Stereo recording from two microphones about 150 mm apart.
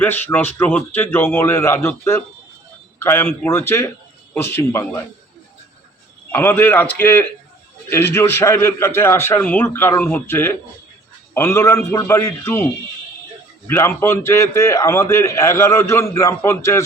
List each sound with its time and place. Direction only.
0.0 s a man's voice: 15° left (ahead or behind)
6.3 s a man's voice: 15° left (ahead or behind)